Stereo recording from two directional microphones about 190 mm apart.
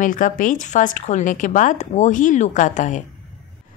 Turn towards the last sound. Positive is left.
turn(degrees=40)  # may be behind; listen again after turning